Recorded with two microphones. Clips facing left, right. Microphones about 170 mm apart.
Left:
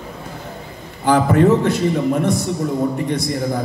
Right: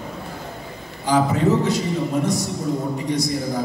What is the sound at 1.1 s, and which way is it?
Mantra, 55° left (ahead or behind).